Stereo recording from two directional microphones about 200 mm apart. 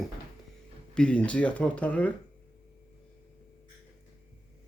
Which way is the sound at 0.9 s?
5° left (ahead or behind).